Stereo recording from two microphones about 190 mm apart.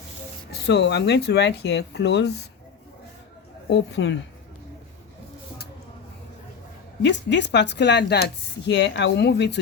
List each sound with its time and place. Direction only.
0.5 s speech: 60° left (ahead or behind)
3.7 s a woman's voice: 65° left (ahead or behind)
7.0 s speech: 65° left (ahead or behind)